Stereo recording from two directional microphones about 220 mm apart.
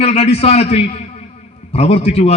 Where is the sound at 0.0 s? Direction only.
30° left (ahead or behind).